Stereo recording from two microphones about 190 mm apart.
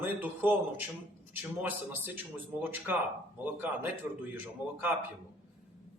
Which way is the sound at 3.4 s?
10° right (ahead or behind).